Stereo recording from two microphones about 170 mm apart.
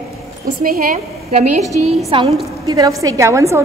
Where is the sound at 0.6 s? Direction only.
60° right (ahead or behind).